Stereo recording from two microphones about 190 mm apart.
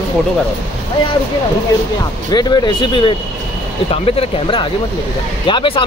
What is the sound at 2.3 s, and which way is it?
Speech, 20° left (ahead or behind).